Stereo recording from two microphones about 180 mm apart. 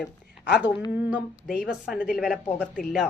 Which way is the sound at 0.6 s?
25° left (ahead or behind).